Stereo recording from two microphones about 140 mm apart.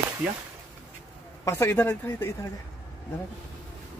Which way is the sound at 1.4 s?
20° left (ahead or behind).